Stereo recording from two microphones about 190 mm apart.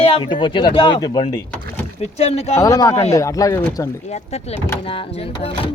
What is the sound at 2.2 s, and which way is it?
Speech, 35° left (ahead or behind).